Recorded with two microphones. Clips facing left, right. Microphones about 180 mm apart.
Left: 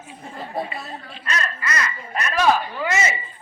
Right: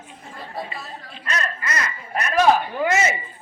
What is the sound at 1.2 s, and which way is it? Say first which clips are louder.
Speech: even; 45° right (ahead or behind).